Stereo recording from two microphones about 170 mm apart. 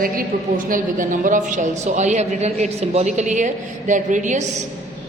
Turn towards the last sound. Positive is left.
turn(degrees=-45)  # may be behind; listen again after turning